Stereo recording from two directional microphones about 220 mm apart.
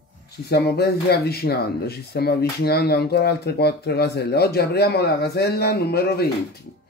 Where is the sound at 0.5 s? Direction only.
45° left (ahead or behind).